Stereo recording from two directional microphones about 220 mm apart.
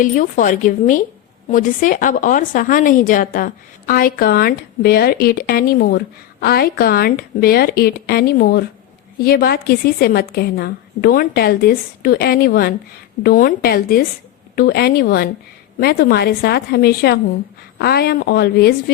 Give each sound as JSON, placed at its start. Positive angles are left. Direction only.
{"t": 0.0, "sound": "a woman's voice", "side_deg": 35}